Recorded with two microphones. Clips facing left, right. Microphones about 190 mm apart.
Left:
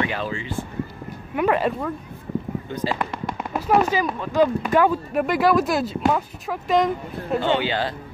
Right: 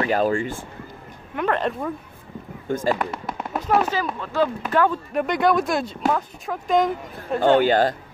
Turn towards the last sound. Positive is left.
turn(degrees=-45)  # may be behind; listen again after turning